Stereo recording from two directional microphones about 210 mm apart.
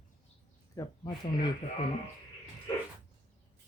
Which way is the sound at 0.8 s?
15° left (ahead or behind).